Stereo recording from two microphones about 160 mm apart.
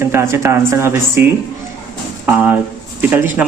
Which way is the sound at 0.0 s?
15° right (ahead or behind).